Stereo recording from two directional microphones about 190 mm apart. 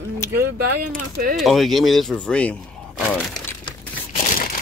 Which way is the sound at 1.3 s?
Centre (ahead or behind).